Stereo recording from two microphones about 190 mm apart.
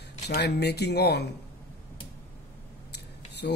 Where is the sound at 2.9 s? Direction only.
60° left (ahead or behind).